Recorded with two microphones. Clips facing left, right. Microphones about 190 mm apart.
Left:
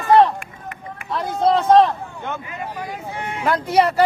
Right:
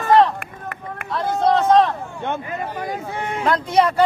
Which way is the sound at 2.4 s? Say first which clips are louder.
Right 3 dB; 45° right (ahead or behind).